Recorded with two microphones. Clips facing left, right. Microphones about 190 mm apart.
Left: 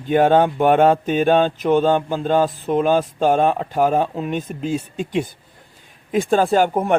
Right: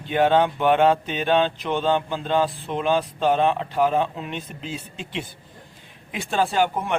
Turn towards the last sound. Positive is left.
turn(degrees=50)  # may be behind; listen again after turning